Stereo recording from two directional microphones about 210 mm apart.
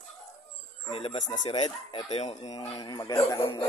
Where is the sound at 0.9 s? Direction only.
25° left (ahead or behind).